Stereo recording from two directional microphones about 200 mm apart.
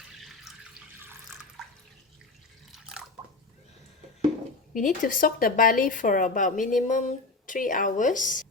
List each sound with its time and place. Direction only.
0.5 s drip: centre (ahead or behind)
2.7 s bathtub: 5° right (ahead or behind)
4.7 s speech: 40° left (ahead or behind)